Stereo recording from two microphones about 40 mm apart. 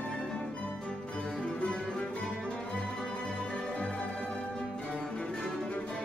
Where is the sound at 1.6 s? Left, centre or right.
Left.